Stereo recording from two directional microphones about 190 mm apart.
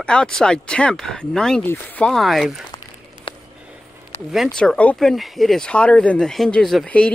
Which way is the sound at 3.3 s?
30° left (ahead or behind).